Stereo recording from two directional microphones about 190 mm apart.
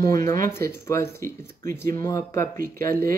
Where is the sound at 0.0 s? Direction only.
15° left (ahead or behind).